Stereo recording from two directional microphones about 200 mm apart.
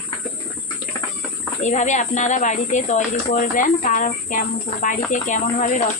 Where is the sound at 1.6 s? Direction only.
35° left (ahead or behind).